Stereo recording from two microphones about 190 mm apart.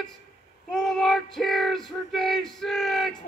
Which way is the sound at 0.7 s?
Centre (ahead or behind).